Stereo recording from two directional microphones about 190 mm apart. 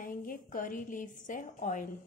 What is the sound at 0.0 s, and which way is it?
A woman's voice, 45° left (ahead or behind).